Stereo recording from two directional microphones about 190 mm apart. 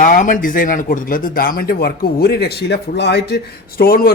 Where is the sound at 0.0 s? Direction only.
45° left (ahead or behind).